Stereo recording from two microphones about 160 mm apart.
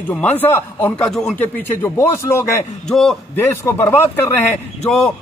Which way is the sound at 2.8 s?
Centre (ahead or behind).